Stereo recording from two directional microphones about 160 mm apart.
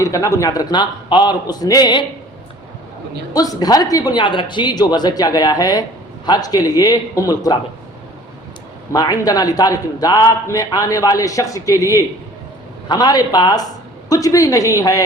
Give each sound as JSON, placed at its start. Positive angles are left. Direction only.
{"t": 0.0, "sound": "a man's voice", "side_deg": 20}
{"t": 3.3, "sound": "a man's voice", "side_deg": 25}
{"t": 8.9, "sound": "a man's voice", "side_deg": 20}